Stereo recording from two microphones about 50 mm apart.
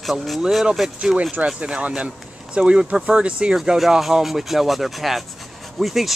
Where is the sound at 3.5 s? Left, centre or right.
Centre.